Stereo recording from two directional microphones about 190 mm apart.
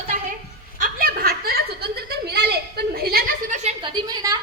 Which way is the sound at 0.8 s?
45° right (ahead or behind).